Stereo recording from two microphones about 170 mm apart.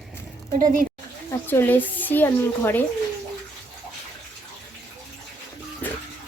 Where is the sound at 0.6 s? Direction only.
50° right (ahead or behind).